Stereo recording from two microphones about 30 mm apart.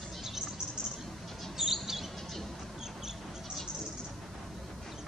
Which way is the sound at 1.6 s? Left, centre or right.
Centre.